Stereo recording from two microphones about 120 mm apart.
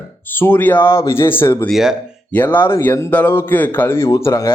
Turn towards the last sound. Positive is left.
turn(degrees=25)  # may be behind; listen again after turning